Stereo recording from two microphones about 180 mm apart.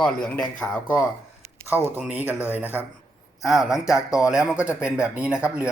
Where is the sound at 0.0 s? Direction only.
5° left (ahead or behind).